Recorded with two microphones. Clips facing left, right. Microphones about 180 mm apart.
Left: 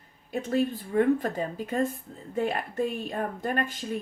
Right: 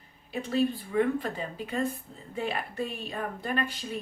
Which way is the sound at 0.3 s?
45° left (ahead or behind).